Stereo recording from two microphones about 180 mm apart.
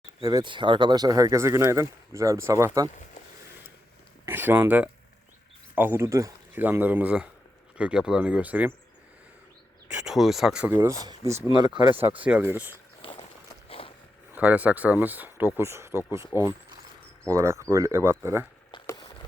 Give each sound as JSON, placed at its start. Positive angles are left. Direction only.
{"t": 0.2, "sound": "speech", "side_deg": -20}
{"t": 4.3, "sound": "speech", "side_deg": -10}
{"t": 10.1, "sound": "speech", "side_deg": 0}
{"t": 12.2, "sound": "speech", "side_deg": -10}
{"t": 13.0, "sound": "a sound", "side_deg": 30}
{"t": 13.7, "sound": "biting", "side_deg": 30}
{"t": 14.3, "sound": "speech", "side_deg": -10}
{"t": 18.7, "sound": "a sound", "side_deg": 20}